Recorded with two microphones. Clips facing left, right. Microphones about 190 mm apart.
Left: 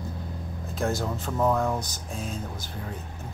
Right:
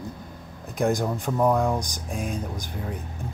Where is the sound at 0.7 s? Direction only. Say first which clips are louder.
Right 4 dB; 15° right (ahead or behind).